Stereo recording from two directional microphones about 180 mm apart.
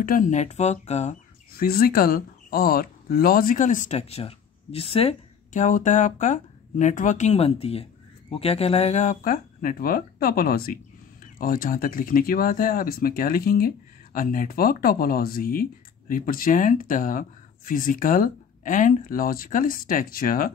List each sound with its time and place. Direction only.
0.0 s speech: 45° left (ahead or behind)
1.6 s speech: 55° left (ahead or behind)